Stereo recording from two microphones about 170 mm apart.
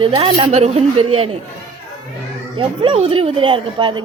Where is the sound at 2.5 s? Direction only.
30° right (ahead or behind).